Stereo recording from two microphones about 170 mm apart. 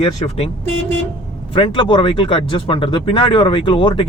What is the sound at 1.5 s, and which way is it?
Speech, 30° left (ahead or behind).